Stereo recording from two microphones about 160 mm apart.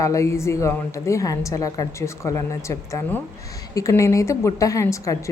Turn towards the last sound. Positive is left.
turn(degrees=20)  # may be behind; listen again after turning